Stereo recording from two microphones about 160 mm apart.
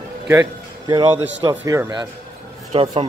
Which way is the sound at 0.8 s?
25° right (ahead or behind).